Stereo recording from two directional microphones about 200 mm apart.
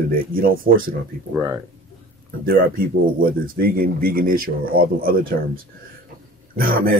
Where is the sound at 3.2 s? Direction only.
45° right (ahead or behind).